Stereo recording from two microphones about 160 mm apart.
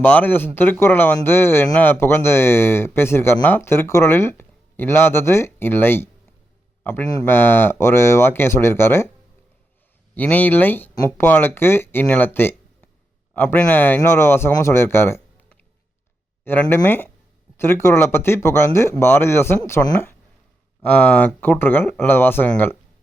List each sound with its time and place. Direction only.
0.0 s speech: 10° left (ahead or behind)
10.2 s speech: 10° left (ahead or behind)